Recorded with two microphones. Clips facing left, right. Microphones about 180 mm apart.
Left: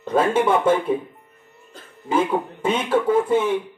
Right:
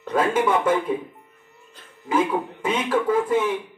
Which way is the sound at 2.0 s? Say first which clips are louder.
Left 1 dB; 30° left (ahead or behind).